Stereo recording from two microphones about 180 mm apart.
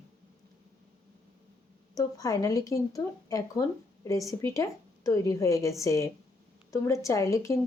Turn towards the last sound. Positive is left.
turn(degrees=15)  # may be behind; listen again after turning